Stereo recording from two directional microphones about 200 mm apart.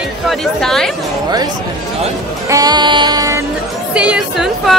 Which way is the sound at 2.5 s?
20° right (ahead or behind).